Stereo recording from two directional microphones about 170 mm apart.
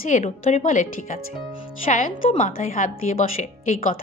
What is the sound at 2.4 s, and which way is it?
A woman's voice, 50° left (ahead or behind).